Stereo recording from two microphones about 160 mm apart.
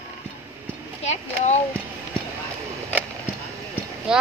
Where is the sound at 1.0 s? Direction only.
45° left (ahead or behind).